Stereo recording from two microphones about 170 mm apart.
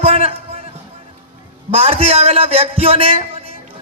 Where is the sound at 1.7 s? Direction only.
35° right (ahead or behind).